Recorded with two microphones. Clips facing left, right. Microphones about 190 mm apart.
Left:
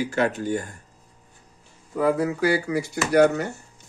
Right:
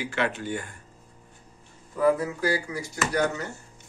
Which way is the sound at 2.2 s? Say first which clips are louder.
Left 5 dB; 70° left (ahead or behind).